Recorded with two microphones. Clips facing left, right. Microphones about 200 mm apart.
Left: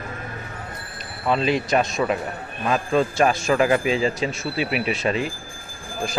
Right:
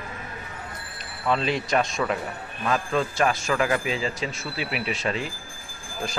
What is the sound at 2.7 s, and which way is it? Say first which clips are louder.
A man's voice: left 4 dB; 20° left (ahead or behind).